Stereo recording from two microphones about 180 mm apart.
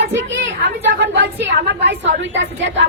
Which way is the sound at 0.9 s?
80° right.